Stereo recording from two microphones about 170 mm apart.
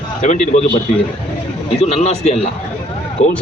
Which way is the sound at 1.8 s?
40° left (ahead or behind).